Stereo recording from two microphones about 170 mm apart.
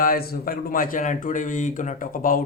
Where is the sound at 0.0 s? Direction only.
60° left (ahead or behind).